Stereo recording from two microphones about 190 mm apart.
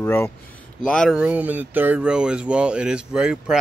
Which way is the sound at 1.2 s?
5° right (ahead or behind).